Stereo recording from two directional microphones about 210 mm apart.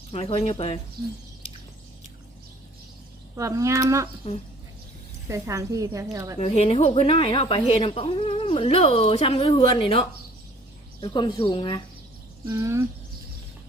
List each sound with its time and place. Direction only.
0.1 s a woman's voice: 30° left (ahead or behind)
3.3 s speech: 15° right (ahead or behind)
5.3 s speech: 15° right (ahead or behind)
6.4 s a woman's voice: 30° left (ahead or behind)
12.5 s speech: 15° right (ahead or behind)